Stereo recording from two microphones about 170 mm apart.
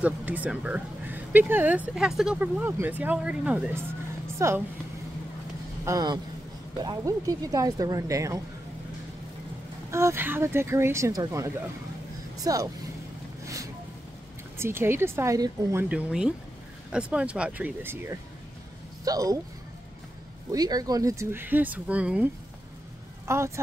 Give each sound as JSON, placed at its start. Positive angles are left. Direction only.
{"t": 0.0, "sound": "speech", "side_deg": -10}
{"t": 5.9, "sound": "speech", "side_deg": -20}
{"t": 9.8, "sound": "speech", "side_deg": -15}
{"t": 14.6, "sound": "speech", "side_deg": -15}
{"t": 20.5, "sound": "speech", "side_deg": -20}